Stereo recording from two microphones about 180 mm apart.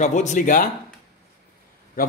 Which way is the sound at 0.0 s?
40° left (ahead or behind).